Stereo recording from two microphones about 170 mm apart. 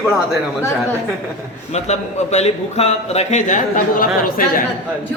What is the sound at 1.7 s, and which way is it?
A man's voice, 40° left (ahead or behind).